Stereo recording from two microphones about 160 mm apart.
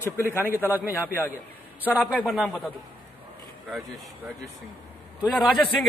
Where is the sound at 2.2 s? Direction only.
Centre (ahead or behind).